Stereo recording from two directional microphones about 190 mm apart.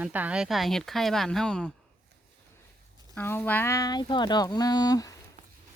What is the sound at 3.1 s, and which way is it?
Speech, 10° left (ahead or behind).